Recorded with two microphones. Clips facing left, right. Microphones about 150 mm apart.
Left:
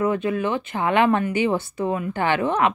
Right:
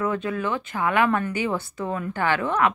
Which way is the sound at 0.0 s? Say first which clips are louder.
Left 4 dB; 20° left (ahead or behind).